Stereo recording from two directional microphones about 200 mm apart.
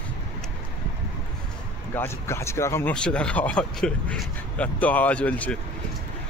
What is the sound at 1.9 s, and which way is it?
Speech, 15° left (ahead or behind).